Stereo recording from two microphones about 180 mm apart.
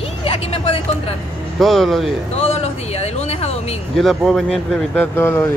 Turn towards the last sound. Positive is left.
turn(degrees=15)  # may be behind; listen again after turning